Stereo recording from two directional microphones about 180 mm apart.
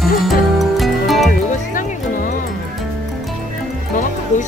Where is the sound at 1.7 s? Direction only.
50° left (ahead or behind).